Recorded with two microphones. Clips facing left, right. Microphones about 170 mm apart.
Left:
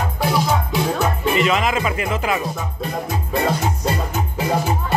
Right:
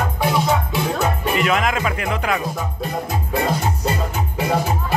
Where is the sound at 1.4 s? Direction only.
Centre (ahead or behind).